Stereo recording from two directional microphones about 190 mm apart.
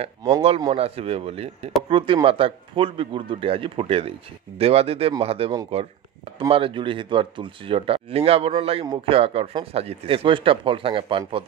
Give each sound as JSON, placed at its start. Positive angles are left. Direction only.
{"t": 0.6, "sound": "speech", "side_deg": -30}